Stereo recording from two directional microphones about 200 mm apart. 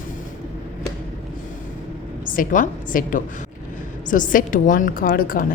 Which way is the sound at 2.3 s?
40° left (ahead or behind).